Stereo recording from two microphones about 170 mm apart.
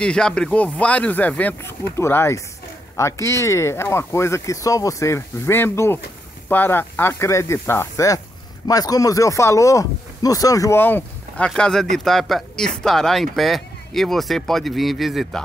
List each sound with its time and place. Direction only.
0.0 s speech: 5° left (ahead or behind)